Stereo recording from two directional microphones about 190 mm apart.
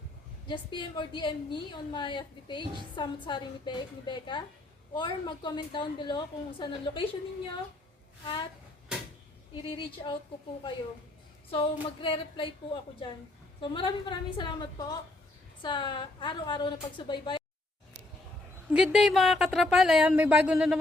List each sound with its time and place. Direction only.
0.4 s a woman's voice: 25° left (ahead or behind)
8.2 s a woman's voice: 25° left (ahead or behind)
9.6 s a woman's voice: 25° left (ahead or behind)
11.5 s a woman's voice: 25° left (ahead or behind)
13.6 s a woman's voice: 25° left (ahead or behind)
18.7 s speech: 5° right (ahead or behind)